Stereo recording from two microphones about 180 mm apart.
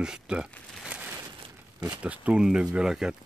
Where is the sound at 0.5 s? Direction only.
Centre (ahead or behind).